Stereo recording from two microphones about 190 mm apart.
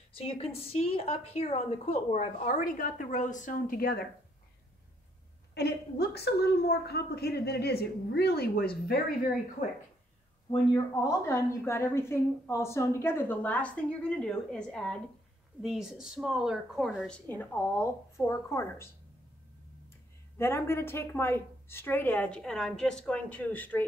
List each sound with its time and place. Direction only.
0.1 s a woman's voice: 30° left (ahead or behind); by 4.0 s 50° left (ahead or behind)
5.5 s a woman's voice: 60° left (ahead or behind)
10.7 s a woman's voice: 15° left (ahead or behind)
20.3 s a woman's voice: 10° left (ahead or behind)